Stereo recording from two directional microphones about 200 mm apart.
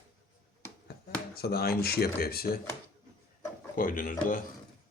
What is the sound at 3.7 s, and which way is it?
Speech, 45° left (ahead or behind).